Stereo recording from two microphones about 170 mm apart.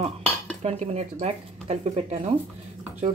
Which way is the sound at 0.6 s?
40° right (ahead or behind).